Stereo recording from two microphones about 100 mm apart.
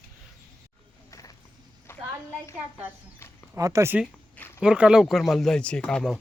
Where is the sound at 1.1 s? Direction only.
35° left (ahead or behind).